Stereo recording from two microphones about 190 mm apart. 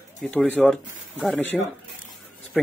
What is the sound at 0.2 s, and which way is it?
Speech, 5° left (ahead or behind).